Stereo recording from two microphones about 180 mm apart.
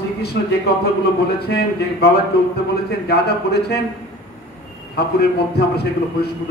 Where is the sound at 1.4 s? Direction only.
60° left (ahead or behind).